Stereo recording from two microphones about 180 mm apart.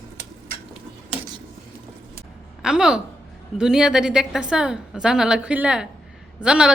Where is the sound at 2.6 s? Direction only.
5° right (ahead or behind).